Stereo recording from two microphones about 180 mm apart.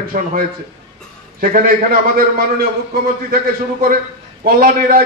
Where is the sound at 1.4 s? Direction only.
50° right (ahead or behind).